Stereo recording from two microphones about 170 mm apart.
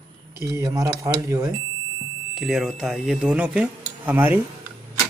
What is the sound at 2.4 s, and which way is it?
Speech, centre (ahead or behind).